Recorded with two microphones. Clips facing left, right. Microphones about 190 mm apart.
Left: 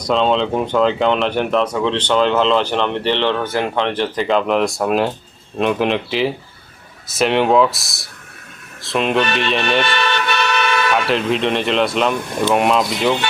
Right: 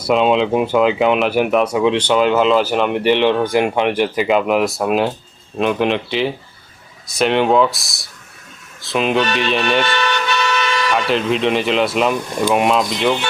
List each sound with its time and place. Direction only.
0.0 s speech: 10° right (ahead or behind)
9.8 s vehicle: 60° left (ahead or behind)
10.9 s speech: centre (ahead or behind)